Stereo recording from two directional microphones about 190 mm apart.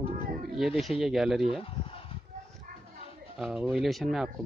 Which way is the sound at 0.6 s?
Centre (ahead or behind).